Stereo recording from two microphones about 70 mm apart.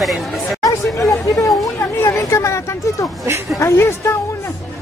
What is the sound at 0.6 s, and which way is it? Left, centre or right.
Speech, left.